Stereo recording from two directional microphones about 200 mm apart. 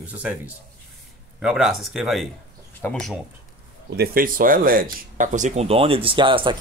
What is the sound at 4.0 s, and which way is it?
Speech, 45° right (ahead or behind).